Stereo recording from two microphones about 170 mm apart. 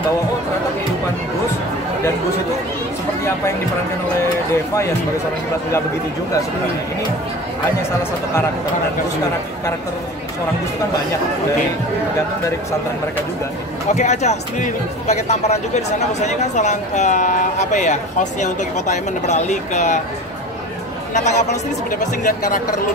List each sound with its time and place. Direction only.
13.9 s speech: 40° left (ahead or behind)
21.1 s speech: 45° left (ahead or behind)